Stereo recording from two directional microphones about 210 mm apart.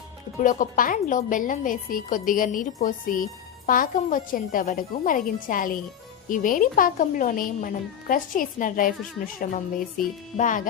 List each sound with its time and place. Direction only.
0.3 s a woman's voice: 40° left (ahead or behind)